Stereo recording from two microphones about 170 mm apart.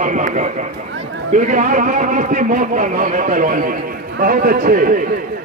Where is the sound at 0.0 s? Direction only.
50° right (ahead or behind).